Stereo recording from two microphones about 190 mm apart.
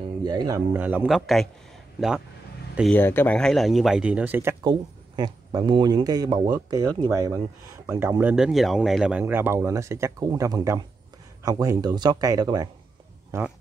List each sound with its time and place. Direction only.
0.2 s speech: 20° right (ahead or behind)
0.7 s speech: 10° right (ahead or behind)
2.9 s speech: 10° left (ahead or behind); by 4.6 s 10° right (ahead or behind)
4.6 s speech: 20° right (ahead or behind)